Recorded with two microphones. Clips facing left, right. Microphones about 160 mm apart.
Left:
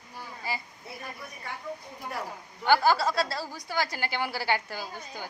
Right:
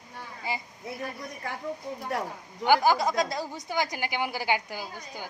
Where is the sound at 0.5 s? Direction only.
20° right (ahead or behind).